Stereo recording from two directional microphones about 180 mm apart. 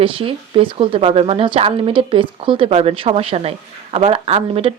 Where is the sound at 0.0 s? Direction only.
30° right (ahead or behind).